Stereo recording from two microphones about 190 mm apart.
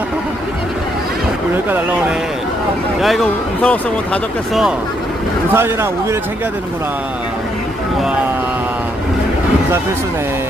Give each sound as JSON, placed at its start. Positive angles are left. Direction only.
{"t": 1.5, "sound": "speech", "side_deg": -10}
{"t": 5.5, "sound": "speech", "side_deg": -15}